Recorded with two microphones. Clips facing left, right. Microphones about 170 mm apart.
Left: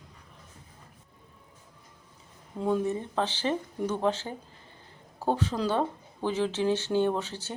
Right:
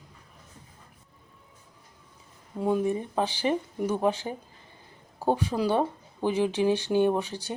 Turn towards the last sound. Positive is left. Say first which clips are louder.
# right 3 dB
turn(degrees=-15)  # may be behind; listen again after turning